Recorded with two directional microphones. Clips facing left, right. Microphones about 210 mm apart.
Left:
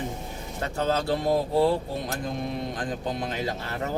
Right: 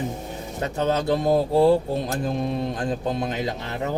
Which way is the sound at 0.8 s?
20° right (ahead or behind).